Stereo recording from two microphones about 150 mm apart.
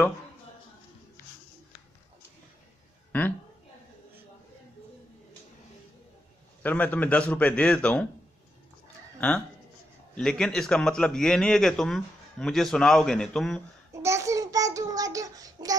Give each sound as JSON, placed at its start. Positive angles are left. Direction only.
{"t": 3.1, "sound": "a sound", "side_deg": 15}
{"t": 6.6, "sound": "a man's voice", "side_deg": 10}
{"t": 10.1, "sound": "a man's voice", "side_deg": 5}
{"t": 13.9, "sound": "child singing", "side_deg": -20}